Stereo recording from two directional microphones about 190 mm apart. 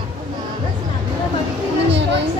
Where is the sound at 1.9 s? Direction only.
65° right (ahead or behind).